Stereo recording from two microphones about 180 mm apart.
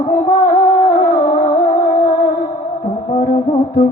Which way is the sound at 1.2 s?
25° left (ahead or behind).